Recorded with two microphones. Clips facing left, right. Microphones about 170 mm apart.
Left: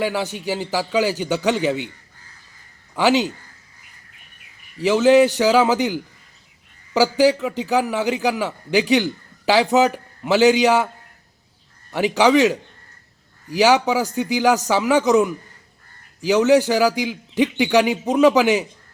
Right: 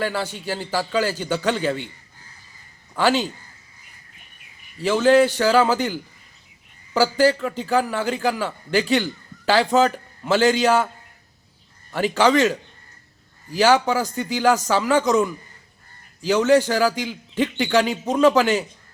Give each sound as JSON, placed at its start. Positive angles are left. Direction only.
{"t": 0.0, "sound": "a man's voice", "side_deg": 15}
{"t": 3.0, "sound": "a man's voice", "side_deg": 15}
{"t": 5.0, "sound": "a man's voice", "side_deg": 15}
{"t": 11.9, "sound": "a man's voice", "side_deg": 15}